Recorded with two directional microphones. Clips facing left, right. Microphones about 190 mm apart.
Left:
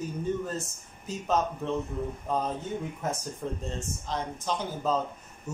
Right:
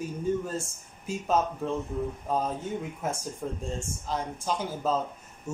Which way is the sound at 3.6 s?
10° right (ahead or behind).